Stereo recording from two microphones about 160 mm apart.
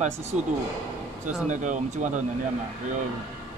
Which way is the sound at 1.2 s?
50° right (ahead or behind).